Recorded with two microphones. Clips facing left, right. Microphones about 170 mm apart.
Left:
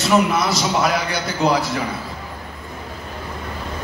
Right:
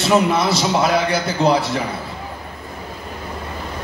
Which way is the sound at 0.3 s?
25° right (ahead or behind).